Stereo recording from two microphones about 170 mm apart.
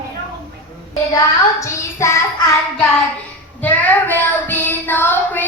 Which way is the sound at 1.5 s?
15° left (ahead or behind).